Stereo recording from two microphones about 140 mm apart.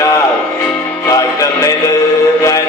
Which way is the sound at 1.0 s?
25° left (ahead or behind).